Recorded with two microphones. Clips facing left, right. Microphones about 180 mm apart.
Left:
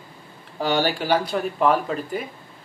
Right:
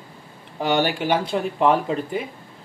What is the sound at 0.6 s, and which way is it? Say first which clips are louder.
Speech: right 1 dB; 20° right (ahead or behind).